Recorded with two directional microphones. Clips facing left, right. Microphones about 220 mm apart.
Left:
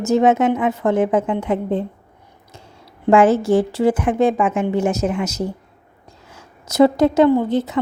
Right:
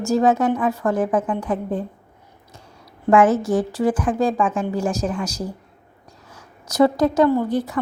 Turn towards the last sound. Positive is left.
turn(degrees=25)  # may be behind; listen again after turning